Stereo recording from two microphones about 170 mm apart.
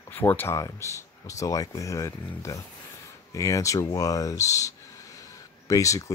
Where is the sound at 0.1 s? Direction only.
10° left (ahead or behind).